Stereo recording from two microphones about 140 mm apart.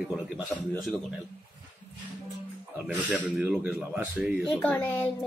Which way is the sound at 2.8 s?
10° right (ahead or behind).